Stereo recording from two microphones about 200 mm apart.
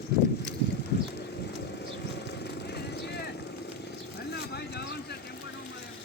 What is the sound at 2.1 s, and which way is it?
Vehicle, 55° left (ahead or behind).